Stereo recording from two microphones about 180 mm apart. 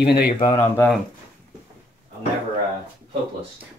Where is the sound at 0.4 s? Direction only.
30° left (ahead or behind).